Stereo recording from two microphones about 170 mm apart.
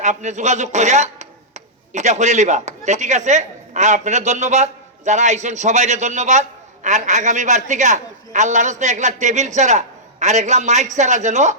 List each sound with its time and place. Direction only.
0.0 s a man's voice: 45° right (ahead or behind)